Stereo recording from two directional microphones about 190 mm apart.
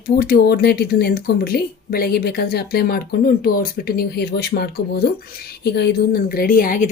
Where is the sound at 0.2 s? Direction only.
50° left (ahead or behind).